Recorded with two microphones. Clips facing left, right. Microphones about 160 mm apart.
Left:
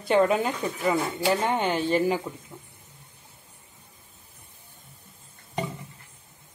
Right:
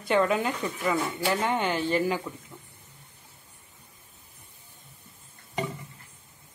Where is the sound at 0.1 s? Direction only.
25° left (ahead or behind).